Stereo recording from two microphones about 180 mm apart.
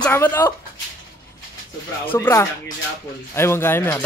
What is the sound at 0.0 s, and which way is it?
Speech, 10° left (ahead or behind).